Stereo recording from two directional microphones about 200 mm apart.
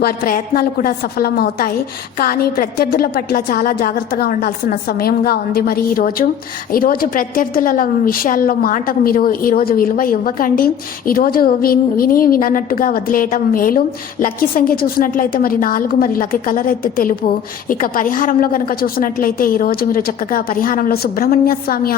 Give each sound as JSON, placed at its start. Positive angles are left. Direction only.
{"t": 0.0, "sound": "a woman's voice", "side_deg": 45}